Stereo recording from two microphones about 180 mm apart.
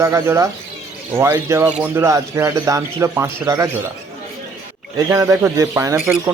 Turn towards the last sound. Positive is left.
turn(degrees=-15)  # may be behind; listen again after turning